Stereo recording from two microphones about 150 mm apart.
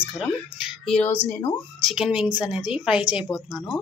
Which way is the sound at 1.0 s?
15° left (ahead or behind).